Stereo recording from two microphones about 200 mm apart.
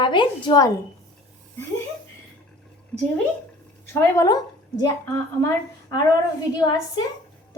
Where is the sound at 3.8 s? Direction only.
10° left (ahead or behind).